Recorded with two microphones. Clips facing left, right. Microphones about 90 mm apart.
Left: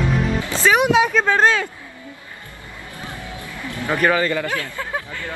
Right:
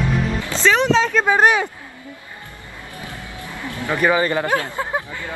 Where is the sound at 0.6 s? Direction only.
10° left (ahead or behind).